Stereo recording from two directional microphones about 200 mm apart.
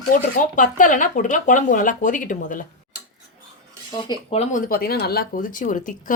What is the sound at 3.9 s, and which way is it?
Speech, 20° left (ahead or behind).